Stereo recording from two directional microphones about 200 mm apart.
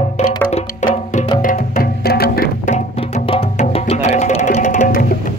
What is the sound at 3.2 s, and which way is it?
Music, 30° left (ahead or behind).